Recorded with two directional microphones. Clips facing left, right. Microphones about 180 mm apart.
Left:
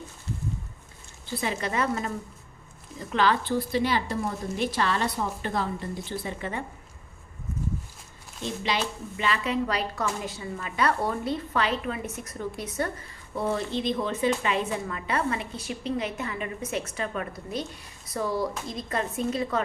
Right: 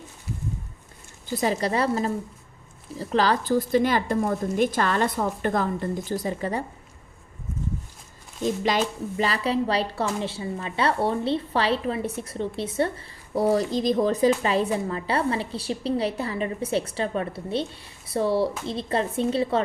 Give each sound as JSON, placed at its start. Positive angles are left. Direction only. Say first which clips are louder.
{"t": 1.4, "sound": "a woman's voice", "louder": "right 5 dB", "side_deg": -35}
{"t": 8.4, "sound": "a woman's voice", "louder": "right 6 dB", "side_deg": -45}